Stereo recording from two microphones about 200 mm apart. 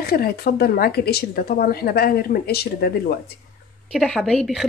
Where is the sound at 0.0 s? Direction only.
50° left (ahead or behind).